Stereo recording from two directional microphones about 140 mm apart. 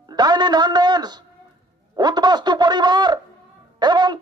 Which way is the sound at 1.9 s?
30° right (ahead or behind).